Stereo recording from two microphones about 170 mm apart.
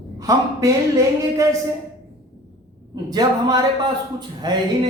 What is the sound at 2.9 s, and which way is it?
A man's voice, 25° right (ahead or behind).